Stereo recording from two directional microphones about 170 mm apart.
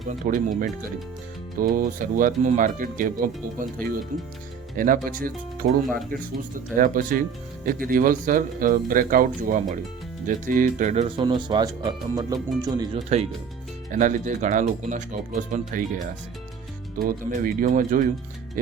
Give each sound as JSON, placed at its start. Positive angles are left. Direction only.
{"t": 0.0, "sound": "speech", "side_deg": -50}
{"t": 11.2, "sound": "speech", "side_deg": -25}
{"t": 13.9, "sound": "speech", "side_deg": -50}
{"t": 17.0, "sound": "speech", "side_deg": -55}